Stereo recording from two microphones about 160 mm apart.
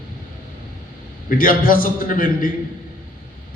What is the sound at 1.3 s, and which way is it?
A man's voice, 60° left (ahead or behind).